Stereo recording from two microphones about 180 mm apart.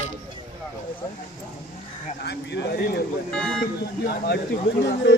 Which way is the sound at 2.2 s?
70° left (ahead or behind).